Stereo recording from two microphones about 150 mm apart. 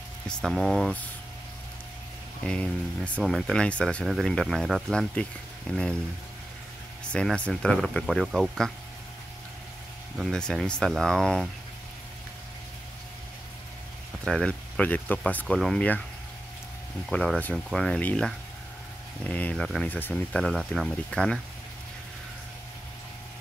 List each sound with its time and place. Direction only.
0.3 s speech: centre (ahead or behind)
2.4 s speech: 5° left (ahead or behind)
7.1 s speech: 5° left (ahead or behind)
10.1 s speech: centre (ahead or behind)
14.2 s speech: 5° left (ahead or behind)
17.1 s speech: 5° left (ahead or behind)